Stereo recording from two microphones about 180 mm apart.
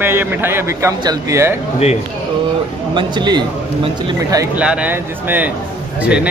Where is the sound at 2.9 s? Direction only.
25° right (ahead or behind).